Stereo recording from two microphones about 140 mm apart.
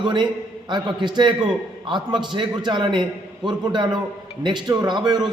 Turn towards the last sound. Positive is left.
turn(degrees=-30)  # may be behind; listen again after turning